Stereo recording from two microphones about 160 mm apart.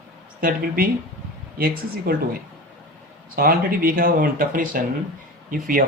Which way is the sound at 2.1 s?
65° right (ahead or behind).